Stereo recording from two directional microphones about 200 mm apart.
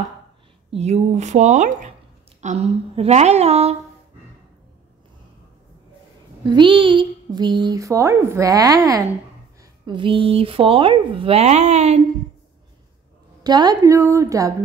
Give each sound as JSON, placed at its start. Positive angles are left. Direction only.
{"t": 0.7, "sound": "a woman's voice", "side_deg": -30}
{"t": 6.4, "sound": "speech", "side_deg": -25}
{"t": 13.4, "sound": "speech", "side_deg": -20}